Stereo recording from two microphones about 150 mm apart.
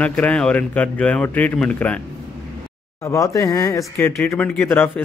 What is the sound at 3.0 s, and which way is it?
A man's voice, 20° left (ahead or behind).